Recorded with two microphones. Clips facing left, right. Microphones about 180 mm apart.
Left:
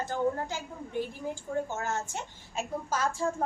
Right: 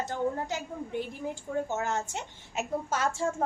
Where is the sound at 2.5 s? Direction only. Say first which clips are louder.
Right 2 dB; 25° right (ahead or behind).